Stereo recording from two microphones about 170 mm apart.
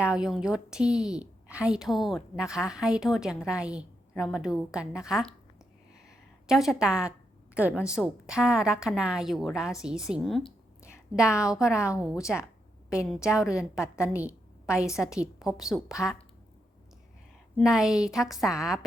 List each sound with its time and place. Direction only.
0.0 s a woman's voice: 5° right (ahead or behind)
6.1 s a sound: centre (ahead or behind)
7.5 s a woman's voice: 5° right (ahead or behind)
13.2 s a woman's voice: 5° right (ahead or behind)
13.8 s a woman's voice: 15° left (ahead or behind)
14.1 s a sound: 10° right (ahead or behind)
14.9 s a woman's voice: 5° right (ahead or behind)
17.6 s a woman's voice: 5° right (ahead or behind)